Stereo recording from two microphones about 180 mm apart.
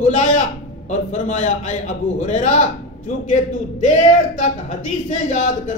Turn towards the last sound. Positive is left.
turn(degrees=40)  # may be behind; listen again after turning